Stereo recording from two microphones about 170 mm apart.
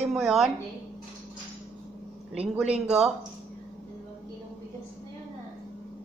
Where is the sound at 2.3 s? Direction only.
5° right (ahead or behind).